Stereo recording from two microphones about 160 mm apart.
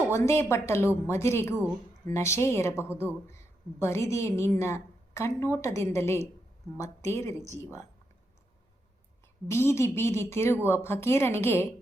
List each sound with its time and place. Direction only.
0.1 s a woman's voice: 15° left (ahead or behind)
9.5 s a woman's voice: 15° left (ahead or behind)